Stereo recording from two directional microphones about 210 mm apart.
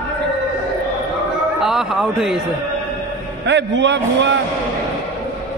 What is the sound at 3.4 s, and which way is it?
Speech, 60° right (ahead or behind).